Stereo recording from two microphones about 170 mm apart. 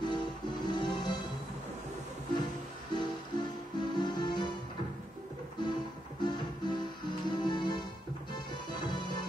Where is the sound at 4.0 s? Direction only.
25° left (ahead or behind).